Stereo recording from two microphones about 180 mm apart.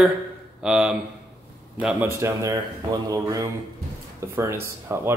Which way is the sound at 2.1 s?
15° right (ahead or behind).